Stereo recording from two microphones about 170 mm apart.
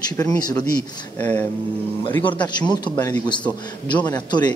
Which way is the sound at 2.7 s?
25° left (ahead or behind).